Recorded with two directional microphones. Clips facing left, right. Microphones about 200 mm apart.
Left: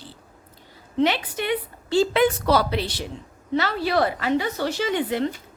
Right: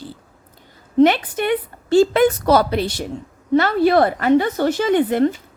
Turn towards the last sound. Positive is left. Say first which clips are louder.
# right 8 dB
turn(degrees=-50)  # may be behind; listen again after turning